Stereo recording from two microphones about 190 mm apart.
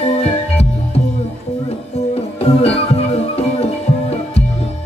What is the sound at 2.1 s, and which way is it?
Music, 35° left (ahead or behind).